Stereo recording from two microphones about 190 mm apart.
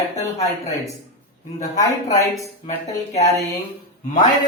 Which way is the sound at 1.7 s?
20° left (ahead or behind).